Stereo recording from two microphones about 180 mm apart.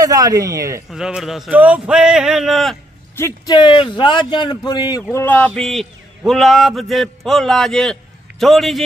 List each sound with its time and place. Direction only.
0.0 s speech: 20° right (ahead or behind)
0.8 s speech: 5° right (ahead or behind)
3.2 s a man's voice: 20° left (ahead or behind)
5.1 s speech: 10° left (ahead or behind)